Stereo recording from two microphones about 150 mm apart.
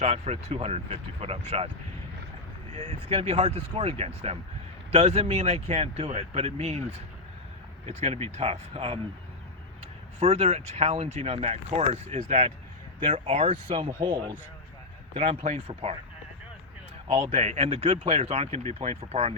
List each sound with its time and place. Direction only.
0.0 s speech: 45° right (ahead or behind)
2.9 s speech: 40° right (ahead or behind)
7.9 s speech: 40° right (ahead or behind)
10.2 s speech: 45° right (ahead or behind)
15.1 s speech: 45° right (ahead or behind)
17.1 s speech: 45° right (ahead or behind)